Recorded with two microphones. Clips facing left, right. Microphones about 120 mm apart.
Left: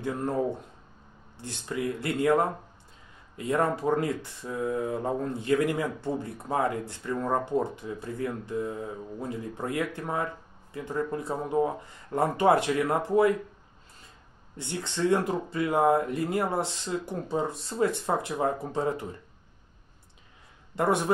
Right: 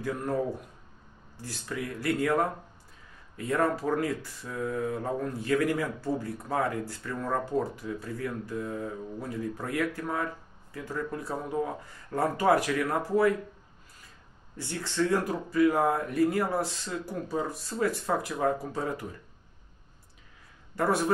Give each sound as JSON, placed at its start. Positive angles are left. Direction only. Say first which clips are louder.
{"t": 0.0, "sound": "speech", "louder": "left 2 dB", "side_deg": 25}
{"t": 1.4, "sound": "speech", "louder": "left 4 dB", "side_deg": 25}
{"t": 14.6, "sound": "speech", "louder": "even", "side_deg": 20}
{"t": 20.7, "sound": "speech", "louder": "left 1 dB", "side_deg": 20}